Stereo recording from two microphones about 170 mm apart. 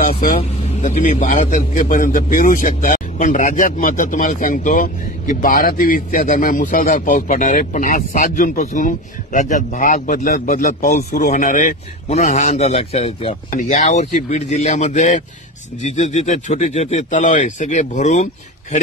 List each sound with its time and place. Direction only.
0.4 s a man's voice: 40° left (ahead or behind)
13.5 s a man's voice: 45° left (ahead or behind)